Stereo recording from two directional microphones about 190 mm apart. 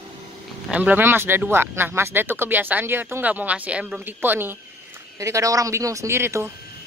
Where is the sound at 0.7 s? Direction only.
5° right (ahead or behind).